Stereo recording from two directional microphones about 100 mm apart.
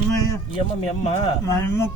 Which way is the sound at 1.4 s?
30° left (ahead or behind).